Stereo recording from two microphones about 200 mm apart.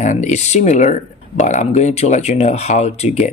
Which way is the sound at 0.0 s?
35° left (ahead or behind).